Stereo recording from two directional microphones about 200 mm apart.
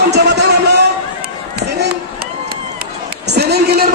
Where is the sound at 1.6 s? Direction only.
55° right (ahead or behind).